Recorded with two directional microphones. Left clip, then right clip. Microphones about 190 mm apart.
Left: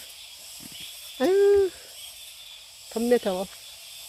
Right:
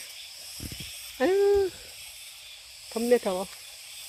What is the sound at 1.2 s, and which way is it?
Hoot, 5° left (ahead or behind).